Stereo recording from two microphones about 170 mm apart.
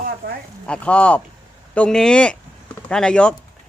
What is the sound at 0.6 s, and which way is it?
Speech, 5° left (ahead or behind).